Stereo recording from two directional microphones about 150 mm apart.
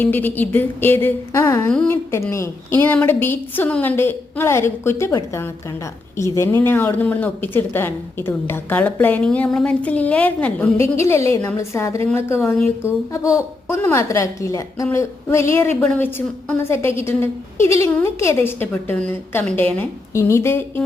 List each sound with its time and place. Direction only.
0.0 s a woman's voice: 10° left (ahead or behind)